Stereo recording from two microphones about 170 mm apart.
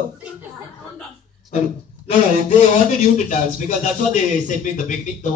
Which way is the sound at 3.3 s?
45° left (ahead or behind).